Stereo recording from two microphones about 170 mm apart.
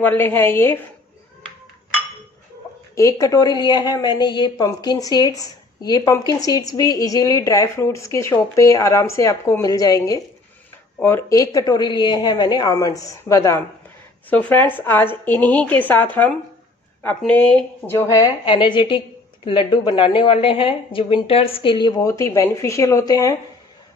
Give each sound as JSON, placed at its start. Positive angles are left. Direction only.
{"t": 0.0, "sound": "a woman's voice", "side_deg": 10}
{"t": 3.0, "sound": "a woman's voice", "side_deg": 20}
{"t": 17.9, "sound": "a woman's voice", "side_deg": 20}